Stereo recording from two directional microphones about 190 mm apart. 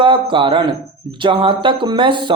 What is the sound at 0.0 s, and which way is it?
A man's voice, 25° right (ahead or behind).